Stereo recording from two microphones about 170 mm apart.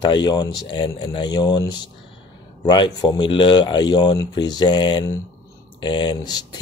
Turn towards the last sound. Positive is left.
turn(degrees=25)  # may be behind; listen again after turning